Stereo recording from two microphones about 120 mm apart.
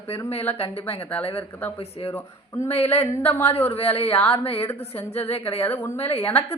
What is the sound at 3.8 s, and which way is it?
Speech, 55° left (ahead or behind).